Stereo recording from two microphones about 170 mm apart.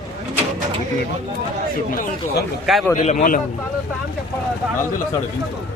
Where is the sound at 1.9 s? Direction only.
65° left (ahead or behind).